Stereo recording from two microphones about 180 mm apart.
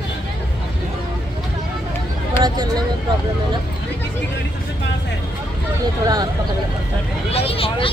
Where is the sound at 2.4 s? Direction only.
25° right (ahead or behind).